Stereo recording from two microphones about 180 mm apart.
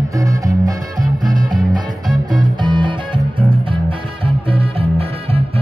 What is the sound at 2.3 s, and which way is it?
Music, 25° right (ahead or behind).